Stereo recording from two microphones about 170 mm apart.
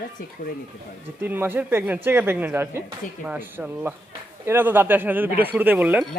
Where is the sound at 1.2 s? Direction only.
10° right (ahead or behind).